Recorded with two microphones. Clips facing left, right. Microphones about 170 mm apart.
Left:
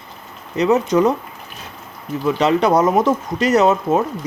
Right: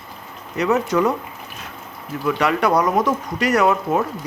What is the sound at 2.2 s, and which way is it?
Speech, 25° left (ahead or behind).